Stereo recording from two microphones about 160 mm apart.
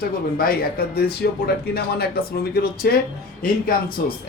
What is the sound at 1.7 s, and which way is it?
Speech, 80° left.